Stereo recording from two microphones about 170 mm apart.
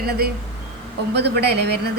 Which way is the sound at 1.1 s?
75° right (ahead or behind).